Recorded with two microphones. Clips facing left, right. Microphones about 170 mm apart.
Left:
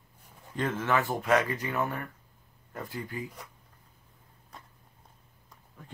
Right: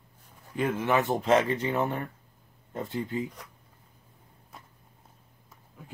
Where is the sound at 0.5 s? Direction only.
10° right (ahead or behind).